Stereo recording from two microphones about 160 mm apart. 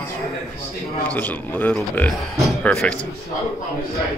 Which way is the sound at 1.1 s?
10° left (ahead or behind).